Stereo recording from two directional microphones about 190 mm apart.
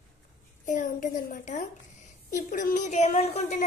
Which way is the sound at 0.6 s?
45° left (ahead or behind).